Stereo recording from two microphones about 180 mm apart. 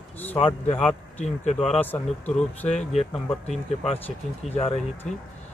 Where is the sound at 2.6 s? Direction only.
35° left (ahead or behind).